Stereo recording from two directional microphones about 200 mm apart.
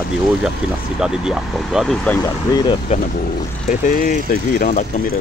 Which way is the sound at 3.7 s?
40° left (ahead or behind).